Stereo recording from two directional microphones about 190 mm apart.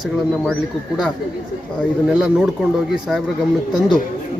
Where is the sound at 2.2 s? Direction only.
5° right (ahead or behind).